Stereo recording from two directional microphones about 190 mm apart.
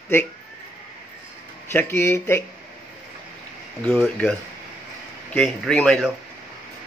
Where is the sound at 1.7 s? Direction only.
10° left (ahead or behind).